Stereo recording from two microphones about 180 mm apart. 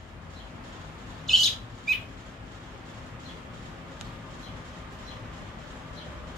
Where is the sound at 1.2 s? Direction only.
Centre (ahead or behind).